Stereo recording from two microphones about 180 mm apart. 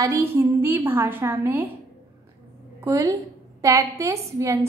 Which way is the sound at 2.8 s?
15° right (ahead or behind).